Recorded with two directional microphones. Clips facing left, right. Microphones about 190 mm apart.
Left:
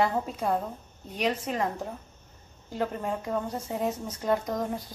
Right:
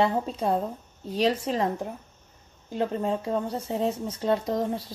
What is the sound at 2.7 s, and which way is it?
Speech, 25° right (ahead or behind).